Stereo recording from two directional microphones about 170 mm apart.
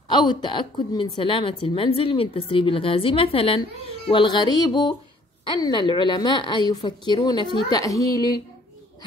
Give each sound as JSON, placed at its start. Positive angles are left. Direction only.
{"t": 0.1, "sound": "a woman's voice", "side_deg": 25}